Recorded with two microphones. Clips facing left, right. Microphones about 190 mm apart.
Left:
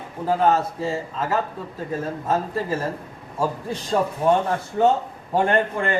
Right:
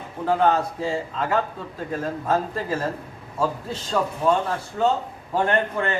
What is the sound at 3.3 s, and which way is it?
Speech, 10° left (ahead or behind).